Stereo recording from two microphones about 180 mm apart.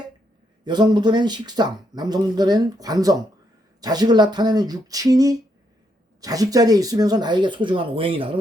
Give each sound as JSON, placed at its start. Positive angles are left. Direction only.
{"t": 0.6, "sound": "speech", "side_deg": -25}